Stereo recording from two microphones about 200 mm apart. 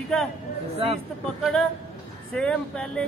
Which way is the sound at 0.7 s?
30° right (ahead or behind).